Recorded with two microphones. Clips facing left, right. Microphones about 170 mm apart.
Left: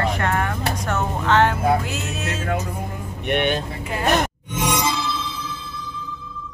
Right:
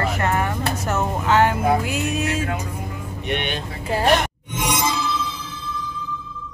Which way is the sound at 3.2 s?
50° left (ahead or behind).